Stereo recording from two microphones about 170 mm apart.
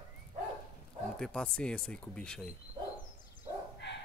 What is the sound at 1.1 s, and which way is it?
Speech, 5° left (ahead or behind).